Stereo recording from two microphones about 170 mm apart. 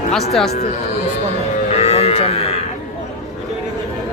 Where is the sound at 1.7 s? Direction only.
35° left (ahead or behind).